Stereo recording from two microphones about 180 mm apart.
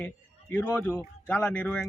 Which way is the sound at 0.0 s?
10° left (ahead or behind).